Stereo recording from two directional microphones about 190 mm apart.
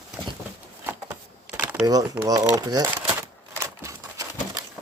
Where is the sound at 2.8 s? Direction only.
10° right (ahead or behind).